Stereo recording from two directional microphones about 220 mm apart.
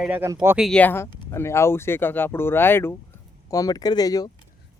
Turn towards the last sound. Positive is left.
turn(degrees=15)  # may be behind; listen again after turning